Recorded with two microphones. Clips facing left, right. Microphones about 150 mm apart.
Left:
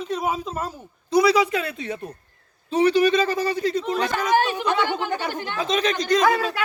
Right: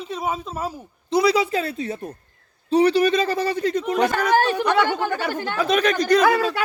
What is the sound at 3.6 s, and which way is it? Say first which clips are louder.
Speech: right 1 dB; 35° left (ahead or behind).